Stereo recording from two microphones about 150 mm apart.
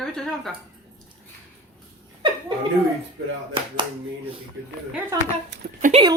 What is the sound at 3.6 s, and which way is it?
Speech, 35° right (ahead or behind).